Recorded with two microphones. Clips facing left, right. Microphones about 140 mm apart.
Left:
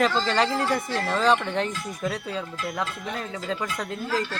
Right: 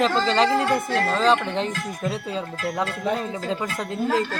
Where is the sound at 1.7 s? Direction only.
50° right (ahead or behind).